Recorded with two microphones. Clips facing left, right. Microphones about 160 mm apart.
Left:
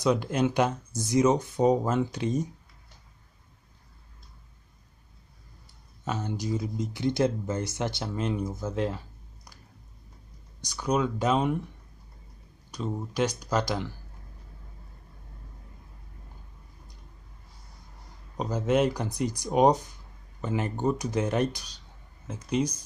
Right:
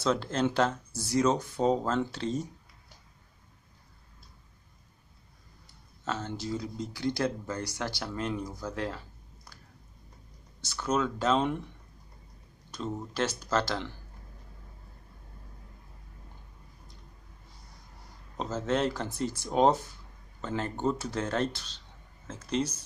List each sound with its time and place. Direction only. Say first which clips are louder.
0.0 s speech: left 3 dB; 15° left (ahead or behind)
6.0 s speech: left 3 dB; 15° left (ahead or behind)
10.6 s speech: left 2 dB; 15° left (ahead or behind)
12.7 s speech: left 3 dB; 10° left (ahead or behind)
18.4 s speech: left 4 dB; 15° left (ahead or behind)